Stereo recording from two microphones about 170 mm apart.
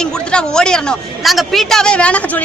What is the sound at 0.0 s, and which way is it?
A woman's voice, 5° left (ahead or behind).